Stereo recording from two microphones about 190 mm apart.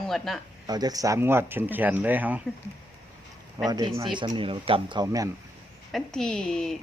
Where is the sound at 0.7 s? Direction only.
20° right (ahead or behind).